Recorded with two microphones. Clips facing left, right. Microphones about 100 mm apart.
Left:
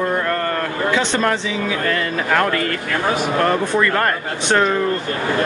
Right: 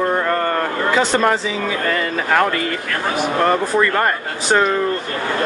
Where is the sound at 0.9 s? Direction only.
5° right (ahead or behind).